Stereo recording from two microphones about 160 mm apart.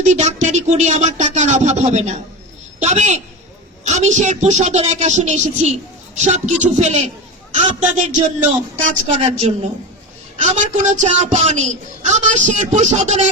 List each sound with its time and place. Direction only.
0.0 s speech: 45° right (ahead or behind)